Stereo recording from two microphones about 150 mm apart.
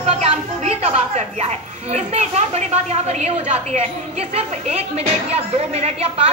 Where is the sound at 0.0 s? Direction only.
40° right (ahead or behind).